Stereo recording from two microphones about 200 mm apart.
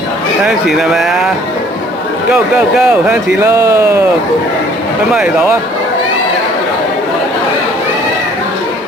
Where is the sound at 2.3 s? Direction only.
5° right (ahead or behind).